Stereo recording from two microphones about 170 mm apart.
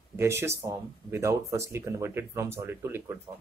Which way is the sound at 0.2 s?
15° right (ahead or behind).